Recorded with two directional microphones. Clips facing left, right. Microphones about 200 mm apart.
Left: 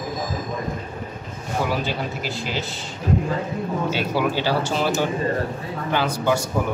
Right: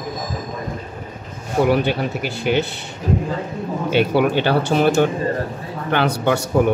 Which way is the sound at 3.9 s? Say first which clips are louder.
Right 9 dB; 60° right (ahead or behind).